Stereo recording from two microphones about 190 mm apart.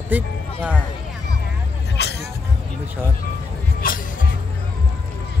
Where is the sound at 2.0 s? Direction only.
60° left (ahead or behind).